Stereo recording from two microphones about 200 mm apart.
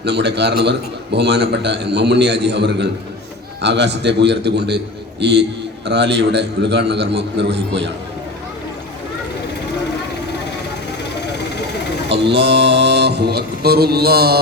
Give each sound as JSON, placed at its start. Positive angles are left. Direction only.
{"t": 0.0, "sound": "a man's voice", "side_deg": -55}
{"t": 12.1, "sound": "a man's voice", "side_deg": -55}